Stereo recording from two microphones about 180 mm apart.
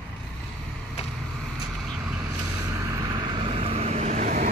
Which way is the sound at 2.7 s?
15° right (ahead or behind).